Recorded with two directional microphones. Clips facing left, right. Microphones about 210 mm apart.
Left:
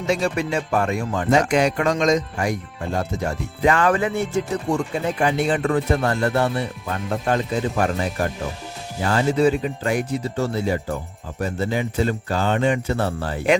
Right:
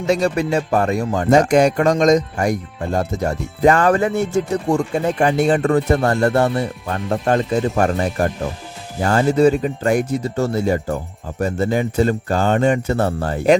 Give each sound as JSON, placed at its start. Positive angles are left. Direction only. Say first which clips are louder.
{"t": 0.1, "sound": "speech", "louder": "right 4 dB", "side_deg": -40}